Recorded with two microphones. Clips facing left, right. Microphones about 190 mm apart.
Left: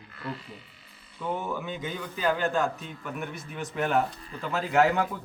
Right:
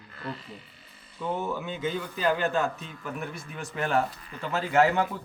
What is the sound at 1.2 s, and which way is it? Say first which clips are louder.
Speech: right 1 dB; centre (ahead or behind).